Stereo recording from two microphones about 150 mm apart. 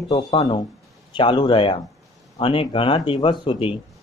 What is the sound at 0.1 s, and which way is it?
Speech, 30° left (ahead or behind).